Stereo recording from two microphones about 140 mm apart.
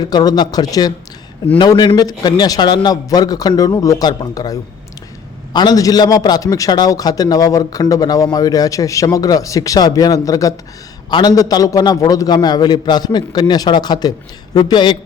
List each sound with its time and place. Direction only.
0.0 s a man's voice: 30° left (ahead or behind)
5.5 s a man's voice: 25° left (ahead or behind)